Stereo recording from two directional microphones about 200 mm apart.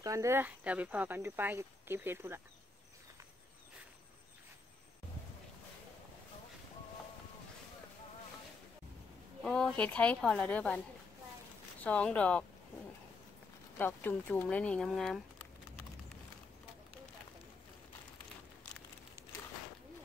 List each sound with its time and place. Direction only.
0.0 s speech: 15° right (ahead or behind)
9.4 s a woman's voice: 5° left (ahead or behind)
11.8 s speech: 5° left (ahead or behind)
13.7 s speech: 10° left (ahead or behind)